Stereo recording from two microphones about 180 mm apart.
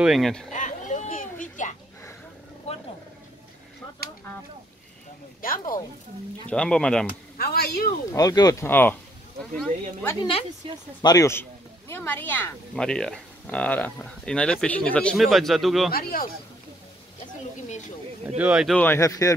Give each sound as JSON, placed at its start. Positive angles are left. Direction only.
{"t": 0.0, "sound": "speech", "side_deg": 0}
{"t": 0.5, "sound": "a sound", "side_deg": 45}
{"t": 5.4, "sound": "speech", "side_deg": 50}
{"t": 6.5, "sound": "speech", "side_deg": 5}
{"t": 7.3, "sound": "speech", "side_deg": 60}
{"t": 8.1, "sound": "speech", "side_deg": 20}
{"t": 10.0, "sound": "speech", "side_deg": 25}
{"t": 10.6, "sound": "speech", "side_deg": -30}
{"t": 11.0, "sound": "speech", "side_deg": 20}
{"t": 15.9, "sound": "speech", "side_deg": 55}
{"t": 18.4, "sound": "speech", "side_deg": -5}
{"t": 18.8, "sound": "speech", "side_deg": 15}